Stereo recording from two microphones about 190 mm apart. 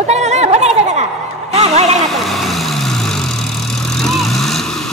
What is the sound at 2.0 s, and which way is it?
Vehicle, centre (ahead or behind).